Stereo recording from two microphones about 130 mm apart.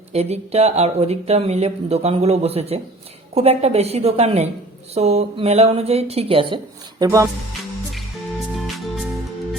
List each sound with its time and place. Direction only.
0.1 s speech: 55° right (ahead or behind)
7.0 s speech: 25° right (ahead or behind)
8.5 s music: centre (ahead or behind)